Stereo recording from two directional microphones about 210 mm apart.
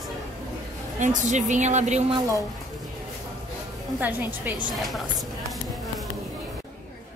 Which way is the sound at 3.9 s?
10° right (ahead or behind).